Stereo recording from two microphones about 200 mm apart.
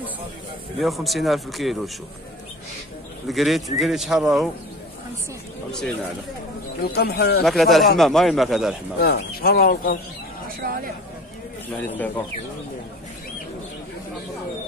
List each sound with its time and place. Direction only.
0.7 s speech: centre (ahead or behind)
3.3 s speech: centre (ahead or behind)
5.7 s speech: 5° left (ahead or behind)
6.8 s speech: 50° left (ahead or behind)
7.4 s speech: centre (ahead or behind)
9.0 s speech: 50° left (ahead or behind)
10.6 s speech: 45° right (ahead or behind)